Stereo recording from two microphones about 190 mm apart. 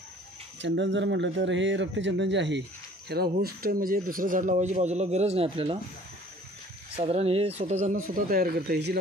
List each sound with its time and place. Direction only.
0.6 s speech: 70° right (ahead or behind)
3.1 s speech: 55° right (ahead or behind); by 5.8 s 30° right (ahead or behind)
7.0 s speech: 30° right (ahead or behind); by 8.9 s 60° right (ahead or behind)